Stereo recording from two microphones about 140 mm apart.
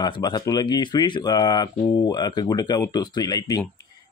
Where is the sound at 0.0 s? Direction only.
30° left (ahead or behind).